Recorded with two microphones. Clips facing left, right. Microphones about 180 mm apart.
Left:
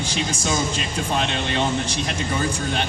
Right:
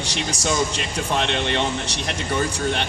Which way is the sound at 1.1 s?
65° right (ahead or behind).